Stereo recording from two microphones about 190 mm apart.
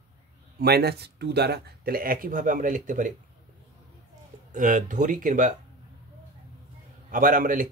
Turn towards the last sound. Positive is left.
turn(degrees=-45)  # may be behind; listen again after turning